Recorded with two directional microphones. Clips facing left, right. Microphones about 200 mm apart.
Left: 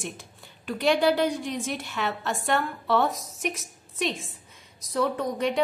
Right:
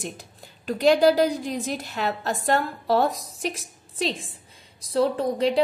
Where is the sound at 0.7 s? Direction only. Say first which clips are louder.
Right 4 dB; 40° right (ahead or behind).